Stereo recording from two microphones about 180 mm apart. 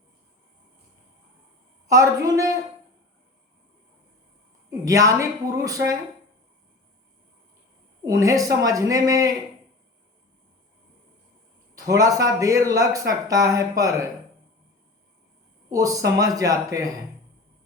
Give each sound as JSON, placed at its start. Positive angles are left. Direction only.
{"t": 1.9, "sound": "a woman's voice", "side_deg": -20}
{"t": 4.9, "sound": "a man's voice", "side_deg": -20}
{"t": 8.0, "sound": "a man's voice", "side_deg": -20}
{"t": 11.9, "sound": "a man's voice", "side_deg": -20}
{"t": 15.7, "sound": "a man's voice", "side_deg": -20}